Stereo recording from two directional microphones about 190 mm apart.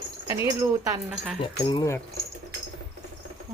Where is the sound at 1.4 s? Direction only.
25° left (ahead or behind).